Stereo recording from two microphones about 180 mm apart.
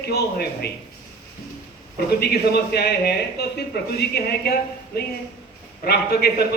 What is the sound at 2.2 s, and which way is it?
A man's voice, 65° left (ahead or behind).